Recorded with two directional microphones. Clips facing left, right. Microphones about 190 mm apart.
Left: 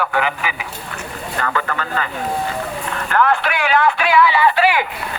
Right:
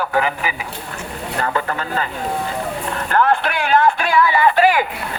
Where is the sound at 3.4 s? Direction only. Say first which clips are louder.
Right 1 dB; 50° right (ahead or behind).